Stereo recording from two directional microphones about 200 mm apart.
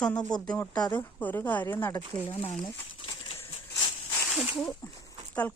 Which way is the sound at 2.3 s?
30° left (ahead or behind).